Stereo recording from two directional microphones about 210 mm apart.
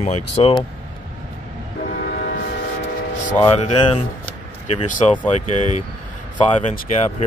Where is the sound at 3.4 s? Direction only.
25° left (ahead or behind).